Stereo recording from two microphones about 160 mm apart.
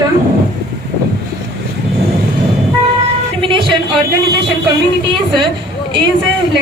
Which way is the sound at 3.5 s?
30° right (ahead or behind).